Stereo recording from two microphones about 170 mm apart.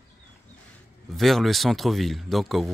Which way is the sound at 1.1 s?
Centre (ahead or behind).